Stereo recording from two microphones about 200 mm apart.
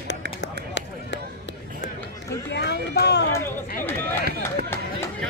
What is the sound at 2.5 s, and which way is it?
Run, 55° left (ahead or behind).